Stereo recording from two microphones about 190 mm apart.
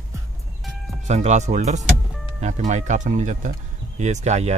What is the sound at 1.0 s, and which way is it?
Speech, 35° right (ahead or behind).